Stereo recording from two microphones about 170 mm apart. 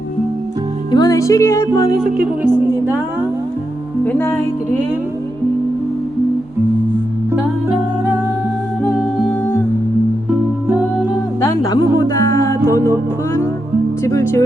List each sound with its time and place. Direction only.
0.9 s music: 25° left (ahead or behind)
2.2 s speech: 10° right (ahead or behind)
4.0 s speech: 10° left (ahead or behind)
10.2 s music: 10° right (ahead or behind)
11.3 s music: 20° left (ahead or behind)
14.0 s speech: 15° left (ahead or behind)